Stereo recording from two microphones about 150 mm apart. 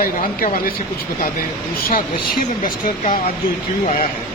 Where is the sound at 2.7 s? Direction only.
65° left (ahead or behind).